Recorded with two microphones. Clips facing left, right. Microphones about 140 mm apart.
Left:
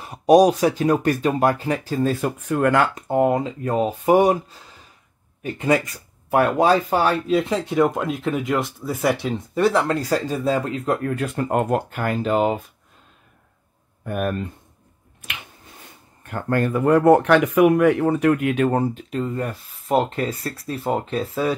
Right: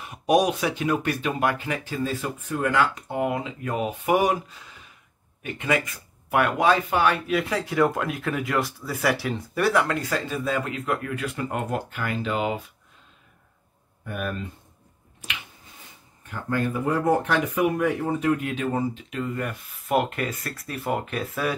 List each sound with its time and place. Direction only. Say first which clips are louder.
0.0 s speech: left 7 dB; 35° left (ahead or behind)
2.4 s speech: left 5 dB; 60° left (ahead or behind); by 12.5 s 40° left (ahead or behind)
14.0 s speech: left 7 dB; 50° left (ahead or behind)
16.3 s speech: left 5 dB; 55° left (ahead or behind)
19.0 s speech: left 4 dB; 35° left (ahead or behind)